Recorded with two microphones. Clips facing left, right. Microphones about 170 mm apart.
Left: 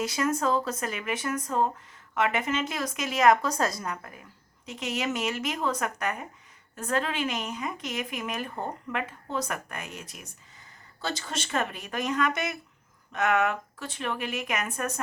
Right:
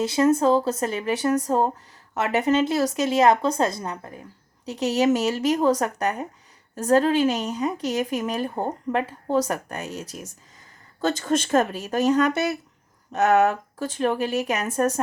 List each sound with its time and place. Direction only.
0.0 s speech: 30° right (ahead or behind)